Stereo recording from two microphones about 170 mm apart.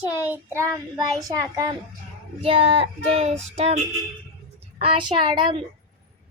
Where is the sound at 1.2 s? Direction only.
20° right (ahead or behind).